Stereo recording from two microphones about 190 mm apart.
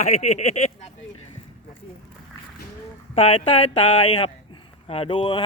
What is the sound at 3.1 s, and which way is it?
Speech, 30° left (ahead or behind).